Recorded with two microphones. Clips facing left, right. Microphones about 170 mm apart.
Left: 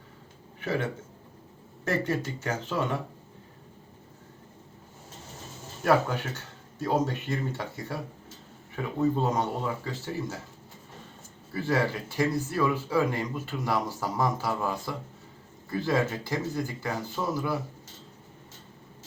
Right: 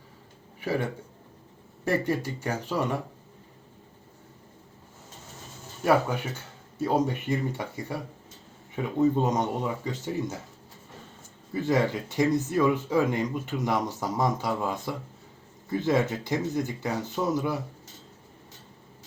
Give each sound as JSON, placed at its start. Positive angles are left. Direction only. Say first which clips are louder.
{"t": 0.6, "sound": "speech", "louder": "right 1 dB", "side_deg": -10}
{"t": 1.9, "sound": "speech", "louder": "right 2 dB", "side_deg": -15}
{"t": 5.8, "sound": "speech", "louder": "right 1 dB", "side_deg": -10}
{"t": 11.5, "sound": "speech", "louder": "right 2 dB", "side_deg": -20}